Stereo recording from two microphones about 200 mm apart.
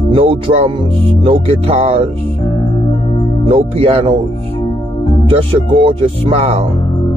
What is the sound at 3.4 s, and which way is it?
Speech, 30° right (ahead or behind).